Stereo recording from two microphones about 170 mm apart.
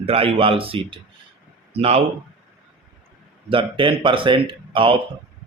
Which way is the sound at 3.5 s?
30° right (ahead or behind).